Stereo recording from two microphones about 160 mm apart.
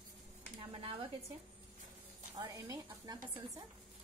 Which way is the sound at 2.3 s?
20° right (ahead or behind).